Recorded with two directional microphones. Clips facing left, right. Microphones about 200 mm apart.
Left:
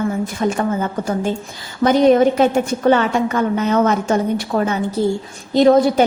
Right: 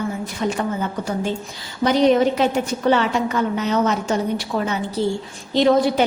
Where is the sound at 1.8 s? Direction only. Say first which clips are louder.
Left 4 dB; 50° left (ahead or behind).